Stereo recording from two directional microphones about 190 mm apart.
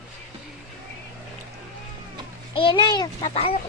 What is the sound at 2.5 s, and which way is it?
A child's voice, 25° left (ahead or behind).